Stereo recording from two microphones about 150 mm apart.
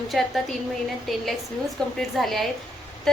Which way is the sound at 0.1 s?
Centre (ahead or behind).